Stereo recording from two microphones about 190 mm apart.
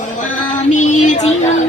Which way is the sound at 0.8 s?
40° left (ahead or behind).